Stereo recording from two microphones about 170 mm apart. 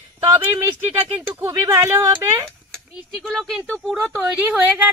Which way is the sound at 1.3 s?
20° right (ahead or behind).